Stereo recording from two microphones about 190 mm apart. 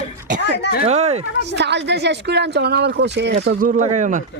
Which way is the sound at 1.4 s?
65° right (ahead or behind).